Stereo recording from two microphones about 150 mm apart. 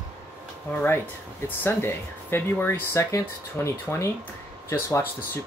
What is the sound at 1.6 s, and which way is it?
Speech, 15° left (ahead or behind).